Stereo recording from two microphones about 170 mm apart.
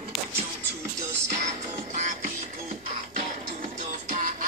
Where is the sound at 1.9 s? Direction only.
50° right (ahead or behind).